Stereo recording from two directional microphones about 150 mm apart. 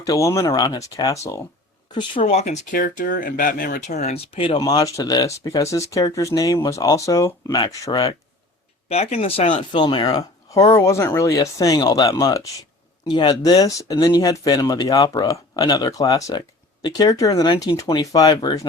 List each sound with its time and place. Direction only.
0.0 s speech: 20° left (ahead or behind)
2.2 s speech: 45° left (ahead or behind)
2.7 s speech: 65° left (ahead or behind); by 4.2 s 50° left (ahead or behind)
4.4 s speech: 35° left (ahead or behind)
8.9 s speech: 45° left (ahead or behind)
9.7 s speech: 30° left (ahead or behind)
13.1 s speech: 30° left (ahead or behind)